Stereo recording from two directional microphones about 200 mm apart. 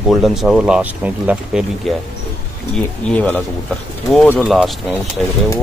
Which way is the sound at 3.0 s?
5° left (ahead or behind).